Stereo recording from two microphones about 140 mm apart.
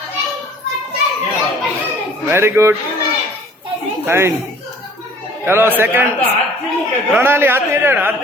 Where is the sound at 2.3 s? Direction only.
15° right (ahead or behind).